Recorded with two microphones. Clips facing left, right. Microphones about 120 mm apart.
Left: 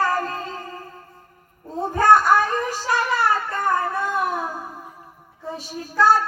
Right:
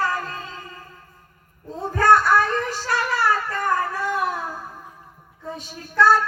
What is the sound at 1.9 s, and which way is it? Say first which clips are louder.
Music: left 1 dB; 15° left (ahead or behind).